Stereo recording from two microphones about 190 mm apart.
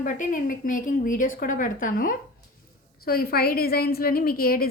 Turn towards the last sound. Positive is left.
turn(degrees=50)  # may be behind; listen again after turning